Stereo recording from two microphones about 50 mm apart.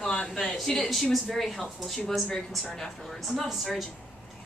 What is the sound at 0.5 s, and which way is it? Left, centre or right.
Speech, centre.